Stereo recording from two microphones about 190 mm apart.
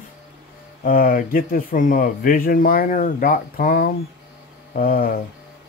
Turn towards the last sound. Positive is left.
turn(degrees=50)  # may be behind; listen again after turning